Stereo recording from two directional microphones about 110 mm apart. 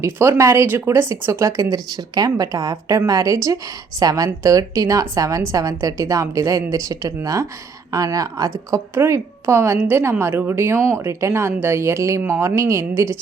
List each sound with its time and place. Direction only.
0.0 s a woman's voice: 25° right (ahead or behind)